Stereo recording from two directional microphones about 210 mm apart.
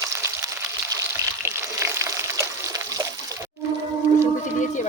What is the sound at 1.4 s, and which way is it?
Water, 15° right (ahead or behind).